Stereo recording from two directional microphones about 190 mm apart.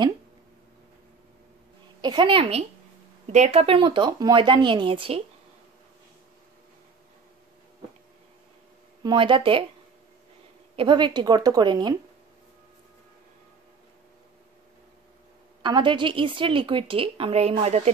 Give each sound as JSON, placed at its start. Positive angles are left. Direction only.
{"t": 2.0, "sound": "a woman's voice", "side_deg": -25}
{"t": 3.3, "sound": "a woman's voice", "side_deg": -35}
{"t": 9.0, "sound": "a woman's voice", "side_deg": -25}
{"t": 10.8, "sound": "a woman's voice", "side_deg": -25}
{"t": 15.6, "sound": "a woman's voice", "side_deg": -25}